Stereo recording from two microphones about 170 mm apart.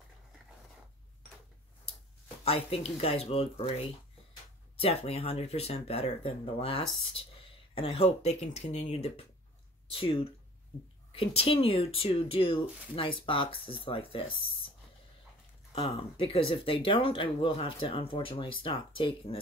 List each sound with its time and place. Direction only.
2.4 s speech: 35° left (ahead or behind)
15.7 s speech: 35° left (ahead or behind)